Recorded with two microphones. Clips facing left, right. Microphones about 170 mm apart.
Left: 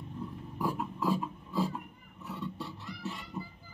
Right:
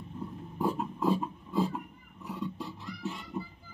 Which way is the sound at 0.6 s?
25° right (ahead or behind).